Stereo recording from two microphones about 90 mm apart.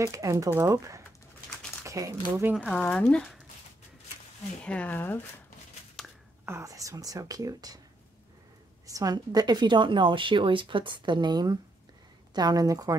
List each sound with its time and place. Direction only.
0.0 s speech: 35° right (ahead or behind)
2.5 s speech: centre (ahead or behind)
2.8 s speech: 15° left (ahead or behind)
4.6 s speech: 15° left (ahead or behind)
6.0 s a sound: 5° left (ahead or behind)
6.4 s speech: 35° right (ahead or behind)
8.8 s a woman's voice: 40° right (ahead or behind)